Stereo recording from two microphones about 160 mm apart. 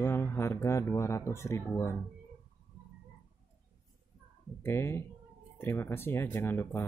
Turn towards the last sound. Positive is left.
turn(degrees=15)  # may be behind; listen again after turning